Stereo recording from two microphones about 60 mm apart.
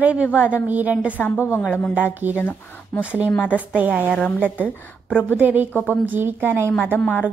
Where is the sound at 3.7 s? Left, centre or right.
Centre.